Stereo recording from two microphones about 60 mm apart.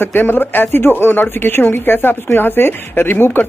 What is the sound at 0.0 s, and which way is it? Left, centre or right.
A woman's voice, left.